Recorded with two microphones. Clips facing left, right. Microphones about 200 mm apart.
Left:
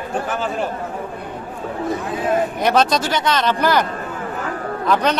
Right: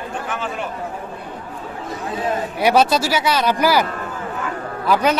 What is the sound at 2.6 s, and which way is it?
A man's voice, 10° right (ahead or behind).